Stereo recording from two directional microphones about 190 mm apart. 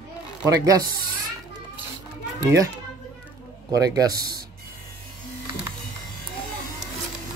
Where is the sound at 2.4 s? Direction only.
15° right (ahead or behind).